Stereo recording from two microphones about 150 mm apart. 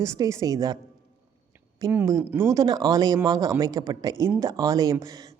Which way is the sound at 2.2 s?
15° right (ahead or behind).